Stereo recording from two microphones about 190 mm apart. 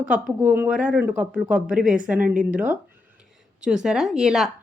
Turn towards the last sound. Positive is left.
turn(degrees=0)  # may be behind; listen again after turning